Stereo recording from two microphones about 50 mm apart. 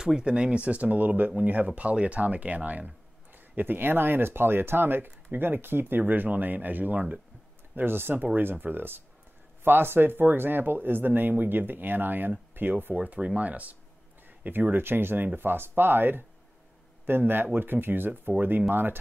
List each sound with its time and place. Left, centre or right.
0.0 s speech: centre
3.5 s speech: right
7.7 s speech: right
12.9 s speech: right